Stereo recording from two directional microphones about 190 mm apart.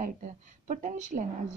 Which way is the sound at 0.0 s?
40° right (ahead or behind).